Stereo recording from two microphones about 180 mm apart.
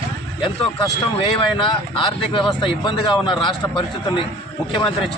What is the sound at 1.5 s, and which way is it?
Speech, 30° left (ahead or behind).